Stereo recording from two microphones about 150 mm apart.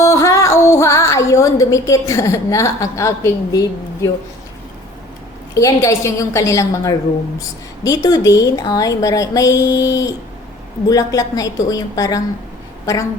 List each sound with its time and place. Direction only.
0.0 s a woman's voice: 20° left (ahead or behind)
5.5 s a woman's voice: 20° left (ahead or behind)